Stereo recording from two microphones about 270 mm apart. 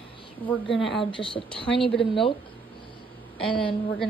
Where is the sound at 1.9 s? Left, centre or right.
Centre.